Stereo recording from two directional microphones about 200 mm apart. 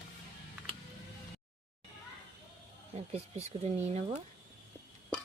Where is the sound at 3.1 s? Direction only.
30° right (ahead or behind).